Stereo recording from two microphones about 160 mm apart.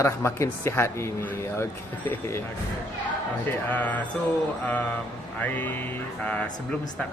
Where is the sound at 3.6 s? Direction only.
10° left (ahead or behind).